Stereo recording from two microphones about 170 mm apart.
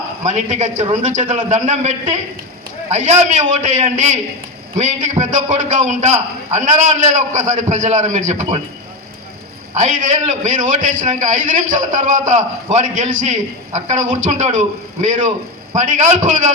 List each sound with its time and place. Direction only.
0.3 s a man's voice: 40° right (ahead or behind)
9.7 s a man's voice: 45° right (ahead or behind)